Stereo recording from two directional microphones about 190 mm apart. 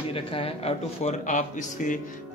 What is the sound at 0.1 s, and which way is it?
A man's voice, 30° left (ahead or behind).